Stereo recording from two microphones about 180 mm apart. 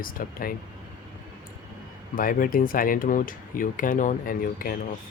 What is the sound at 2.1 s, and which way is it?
Speech, 50° left (ahead or behind).